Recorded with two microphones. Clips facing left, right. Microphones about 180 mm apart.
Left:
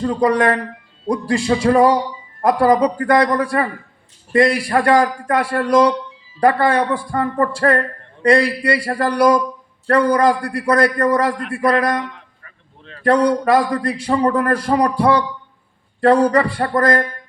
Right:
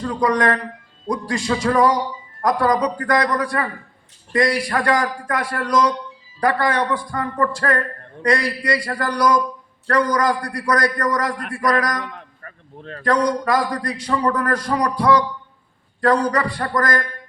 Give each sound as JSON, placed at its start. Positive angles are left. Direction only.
{"t": 0.0, "sound": "a man's voice", "side_deg": 30}
{"t": 12.1, "sound": "a sound", "side_deg": -50}
{"t": 13.0, "sound": "a man's voice", "side_deg": 30}